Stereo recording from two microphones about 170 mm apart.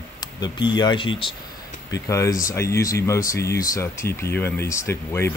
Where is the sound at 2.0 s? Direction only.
20° left (ahead or behind).